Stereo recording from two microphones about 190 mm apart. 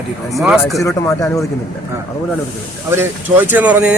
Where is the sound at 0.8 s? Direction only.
15° left (ahead or behind).